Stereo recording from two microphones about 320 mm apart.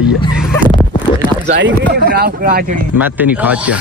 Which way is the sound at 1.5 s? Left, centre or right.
Right.